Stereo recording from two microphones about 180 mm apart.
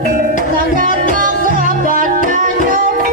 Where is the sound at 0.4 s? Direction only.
50° right (ahead or behind).